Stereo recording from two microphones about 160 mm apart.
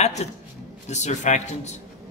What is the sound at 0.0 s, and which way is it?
A man's voice, 45° left (ahead or behind).